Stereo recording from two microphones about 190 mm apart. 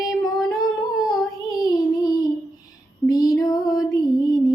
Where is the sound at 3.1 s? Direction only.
20° left (ahead or behind).